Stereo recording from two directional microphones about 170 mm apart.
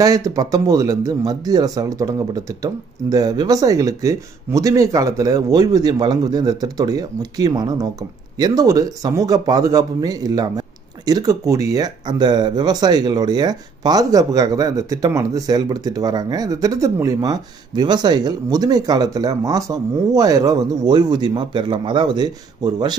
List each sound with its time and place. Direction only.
0.0 s speech: 20° right (ahead or behind)